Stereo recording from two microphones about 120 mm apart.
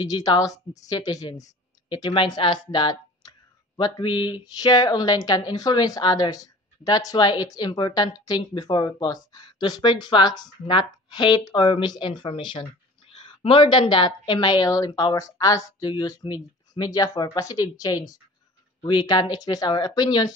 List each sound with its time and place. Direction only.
0.0 s a woman's voice: 35° left (ahead or behind)
1.9 s a woman's voice: 45° left (ahead or behind)